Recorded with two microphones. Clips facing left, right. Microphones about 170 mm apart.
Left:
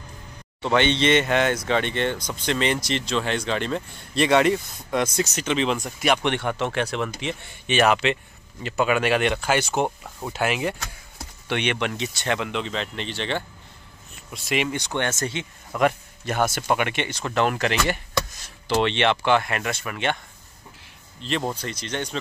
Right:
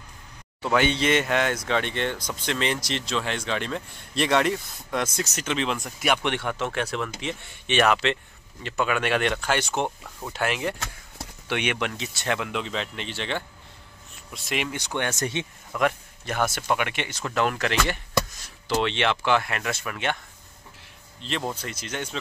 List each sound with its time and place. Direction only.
0.6 s speech: 5° right (ahead or behind)
15.0 s speech: 15° right (ahead or behind)
15.7 s a man's voice: centre (ahead or behind)
21.2 s speech: centre (ahead or behind)